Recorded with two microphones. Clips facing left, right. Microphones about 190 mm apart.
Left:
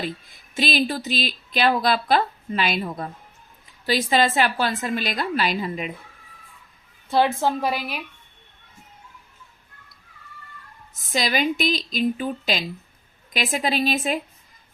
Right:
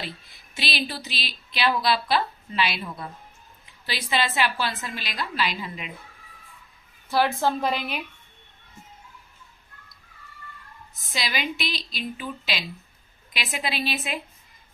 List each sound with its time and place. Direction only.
0.0 s speech: 45° left (ahead or behind)
7.3 s a woman's voice: 10° left (ahead or behind)
11.1 s speech: 45° left (ahead or behind)